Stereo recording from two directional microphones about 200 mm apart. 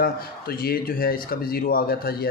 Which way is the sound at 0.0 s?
50° left (ahead or behind).